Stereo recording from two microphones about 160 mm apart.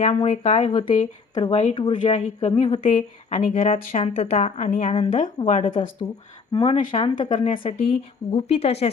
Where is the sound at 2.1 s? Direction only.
45° left (ahead or behind).